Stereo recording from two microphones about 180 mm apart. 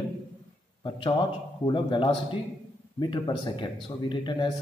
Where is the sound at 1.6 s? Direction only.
25° left (ahead or behind).